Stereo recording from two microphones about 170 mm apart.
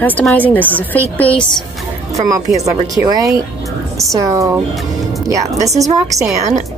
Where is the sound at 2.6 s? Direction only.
20° right (ahead or behind).